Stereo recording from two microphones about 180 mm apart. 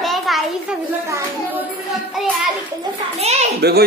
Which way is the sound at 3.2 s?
35° right (ahead or behind).